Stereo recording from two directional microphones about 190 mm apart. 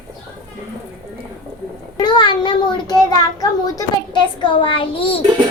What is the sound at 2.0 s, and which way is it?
A child's voice, 25° left (ahead or behind).